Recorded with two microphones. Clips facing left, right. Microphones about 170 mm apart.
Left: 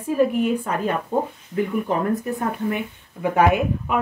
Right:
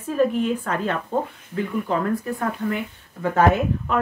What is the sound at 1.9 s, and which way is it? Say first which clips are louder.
A woman's voice: left 1 dB; 20° left (ahead or behind).